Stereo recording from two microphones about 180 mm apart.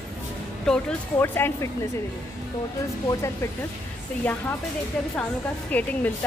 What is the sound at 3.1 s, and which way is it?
Speech, 15° left (ahead or behind).